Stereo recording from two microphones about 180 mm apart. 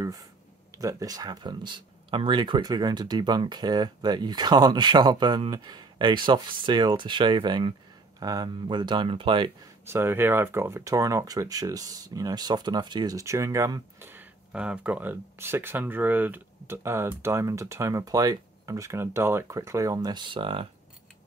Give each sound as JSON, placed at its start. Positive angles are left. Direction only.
{"t": 0.7, "sound": "speech", "side_deg": -20}
{"t": 9.8, "sound": "speech", "side_deg": -15}